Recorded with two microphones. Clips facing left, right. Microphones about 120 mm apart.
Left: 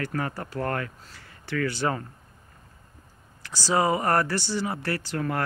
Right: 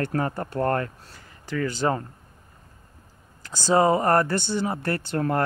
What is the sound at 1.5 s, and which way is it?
Speech, 15° right (ahead or behind).